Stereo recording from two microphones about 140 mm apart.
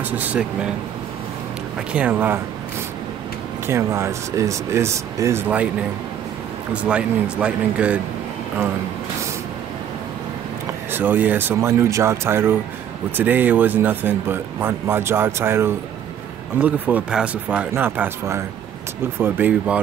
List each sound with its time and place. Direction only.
0.1 s speech: 10° right (ahead or behind)
1.9 s speech: 10° right (ahead or behind)
3.6 s speech: 20° right (ahead or behind)
6.7 s speech: 10° right (ahead or behind)
10.9 s speech: 15° right (ahead or behind)